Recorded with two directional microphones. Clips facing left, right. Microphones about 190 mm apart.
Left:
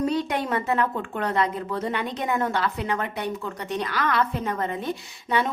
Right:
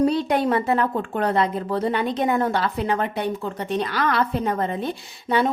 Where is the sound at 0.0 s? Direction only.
35° right (ahead or behind).